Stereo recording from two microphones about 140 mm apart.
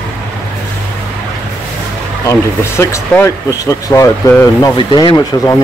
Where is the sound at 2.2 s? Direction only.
20° left (ahead or behind).